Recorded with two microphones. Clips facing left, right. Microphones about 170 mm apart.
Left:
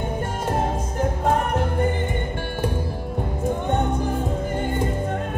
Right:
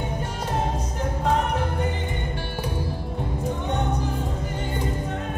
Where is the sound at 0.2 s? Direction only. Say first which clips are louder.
Left 4 dB; 50° left (ahead or behind).